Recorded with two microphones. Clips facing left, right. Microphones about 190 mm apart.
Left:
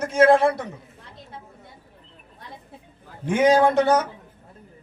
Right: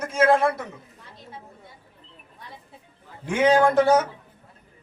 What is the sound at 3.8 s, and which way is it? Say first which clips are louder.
Speech: right 1 dB; 5° right (ahead or behind).